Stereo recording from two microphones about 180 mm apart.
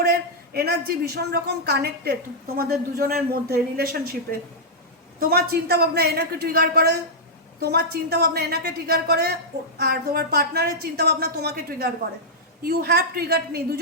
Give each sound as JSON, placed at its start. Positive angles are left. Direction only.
{"t": 0.0, "sound": "a woman's voice", "side_deg": -55}